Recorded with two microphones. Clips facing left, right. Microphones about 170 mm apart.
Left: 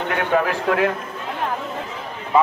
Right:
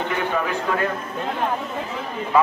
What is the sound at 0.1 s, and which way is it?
Speech, 80° left.